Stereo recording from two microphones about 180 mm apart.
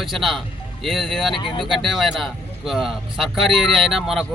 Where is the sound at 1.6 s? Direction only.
Centre (ahead or behind).